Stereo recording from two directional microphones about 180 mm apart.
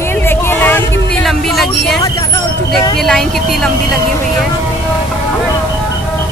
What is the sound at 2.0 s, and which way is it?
Vehicle, 20° left (ahead or behind).